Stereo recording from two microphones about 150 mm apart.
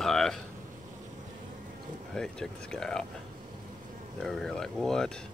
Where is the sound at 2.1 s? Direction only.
5° left (ahead or behind).